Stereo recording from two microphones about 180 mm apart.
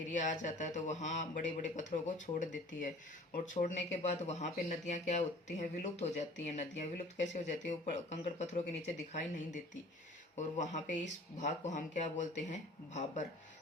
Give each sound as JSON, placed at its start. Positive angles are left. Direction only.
{"t": 0.1, "sound": "speech", "side_deg": 45}
{"t": 10.3, "sound": "speech", "side_deg": 40}